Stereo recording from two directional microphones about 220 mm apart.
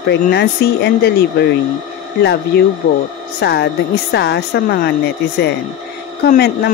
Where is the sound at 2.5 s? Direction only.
45° left (ahead or behind).